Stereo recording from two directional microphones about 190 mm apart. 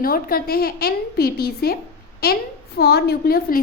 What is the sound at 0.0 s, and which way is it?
A woman's voice, 50° left (ahead or behind).